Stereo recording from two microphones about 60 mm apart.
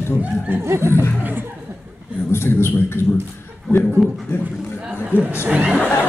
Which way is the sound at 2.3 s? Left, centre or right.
Left.